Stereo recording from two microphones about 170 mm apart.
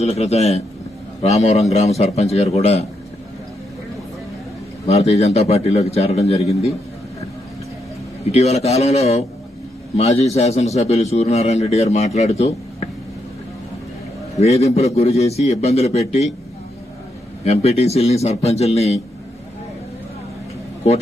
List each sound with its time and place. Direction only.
0.0 s a man's voice: 40° left (ahead or behind)
4.9 s a man's voice: 40° left (ahead or behind)
8.2 s a man's voice: 40° left (ahead or behind)
14.3 s a man's voice: 40° left (ahead or behind)
17.4 s a man's voice: 40° left (ahead or behind)